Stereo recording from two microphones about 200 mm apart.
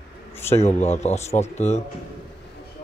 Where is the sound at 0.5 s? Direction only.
35° left (ahead or behind).